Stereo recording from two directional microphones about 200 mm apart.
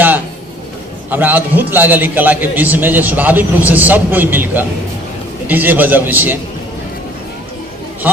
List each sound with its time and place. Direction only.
1.1 s a man's voice: 10° right (ahead or behind)
8.0 s speech: 10° right (ahead or behind)